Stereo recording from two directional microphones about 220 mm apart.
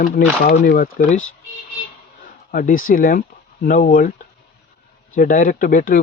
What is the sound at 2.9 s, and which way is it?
Speech, 40° left (ahead or behind).